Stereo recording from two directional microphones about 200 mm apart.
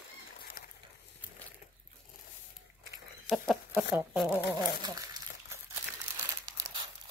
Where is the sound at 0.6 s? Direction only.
45° left (ahead or behind).